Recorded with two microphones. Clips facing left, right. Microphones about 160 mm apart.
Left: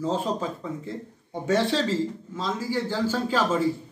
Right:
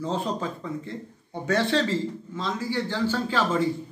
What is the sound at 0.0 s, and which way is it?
A man's voice, 10° left (ahead or behind).